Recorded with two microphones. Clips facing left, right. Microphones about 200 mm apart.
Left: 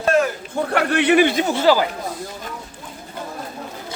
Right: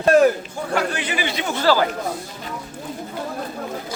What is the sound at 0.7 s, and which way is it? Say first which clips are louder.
Speech: left 7 dB; 60° left (ahead or behind).